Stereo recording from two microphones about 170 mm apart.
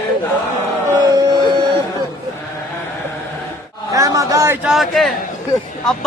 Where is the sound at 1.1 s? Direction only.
25° right (ahead or behind).